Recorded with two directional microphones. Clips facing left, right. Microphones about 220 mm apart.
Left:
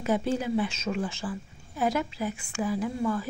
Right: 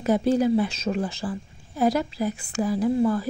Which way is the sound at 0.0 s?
40° right (ahead or behind).